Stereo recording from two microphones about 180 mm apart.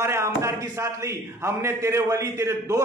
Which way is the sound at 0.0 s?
15° right (ahead or behind).